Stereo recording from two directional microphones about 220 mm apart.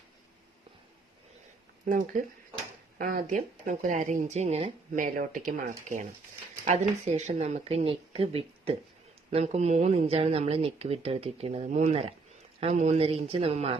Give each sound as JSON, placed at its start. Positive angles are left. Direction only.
{"t": 1.8, "sound": "speech", "side_deg": -35}